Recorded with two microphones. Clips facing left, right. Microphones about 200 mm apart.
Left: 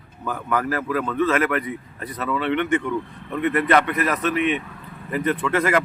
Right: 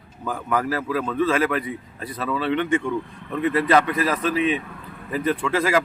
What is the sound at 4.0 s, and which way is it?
Speech, 30° right (ahead or behind).